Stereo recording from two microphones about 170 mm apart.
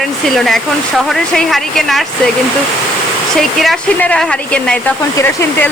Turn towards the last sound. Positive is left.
turn(degrees=5)  # may be behind; listen again after turning